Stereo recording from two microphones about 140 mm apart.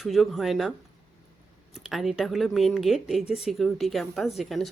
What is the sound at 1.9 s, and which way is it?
Speech, centre (ahead or behind).